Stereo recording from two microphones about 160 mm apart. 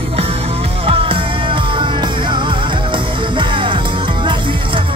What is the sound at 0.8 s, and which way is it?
Music, 35° right (ahead or behind).